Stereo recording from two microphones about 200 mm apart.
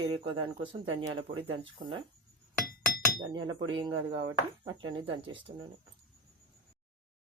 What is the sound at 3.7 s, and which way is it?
Speech, 25° right (ahead or behind).